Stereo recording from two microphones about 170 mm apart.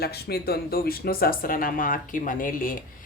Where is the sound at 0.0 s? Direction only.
70° left (ahead or behind).